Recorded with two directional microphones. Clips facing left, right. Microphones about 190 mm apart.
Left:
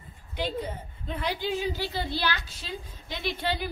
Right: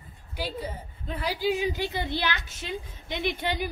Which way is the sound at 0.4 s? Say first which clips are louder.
Left 2 dB; 10° right (ahead or behind).